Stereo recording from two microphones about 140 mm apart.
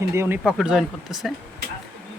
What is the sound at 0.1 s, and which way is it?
Speech, 20° right (ahead or behind).